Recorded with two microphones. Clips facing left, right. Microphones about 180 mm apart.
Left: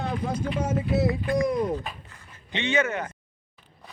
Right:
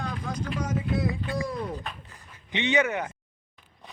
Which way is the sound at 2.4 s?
15° right (ahead or behind).